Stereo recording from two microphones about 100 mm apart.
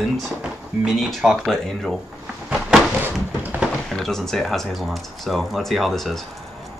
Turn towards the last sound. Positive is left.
turn(degrees=0)  # may be behind; listen again after turning